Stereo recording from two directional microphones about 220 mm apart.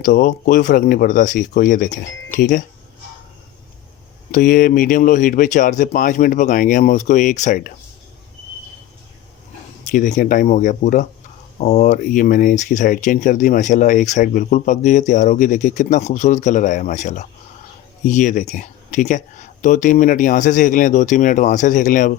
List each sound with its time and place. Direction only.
0.0 s speech: 35° left (ahead or behind)
4.3 s speech: 40° left (ahead or behind)
9.8 s speech: 35° left (ahead or behind)